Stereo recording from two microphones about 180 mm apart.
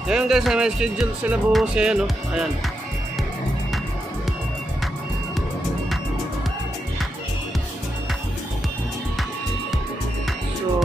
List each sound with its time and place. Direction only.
0.1 s speech: 5° right (ahead or behind)